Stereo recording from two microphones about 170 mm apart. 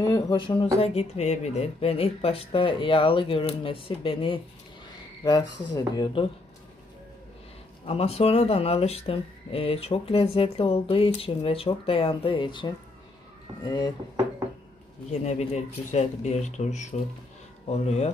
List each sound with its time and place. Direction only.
0.0 s speech: 20° left (ahead or behind)
7.8 s speech: 35° left (ahead or behind)
15.2 s speech: 40° left (ahead or behind)